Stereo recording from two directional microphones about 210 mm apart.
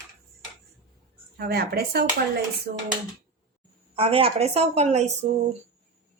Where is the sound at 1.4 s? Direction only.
45° right (ahead or behind).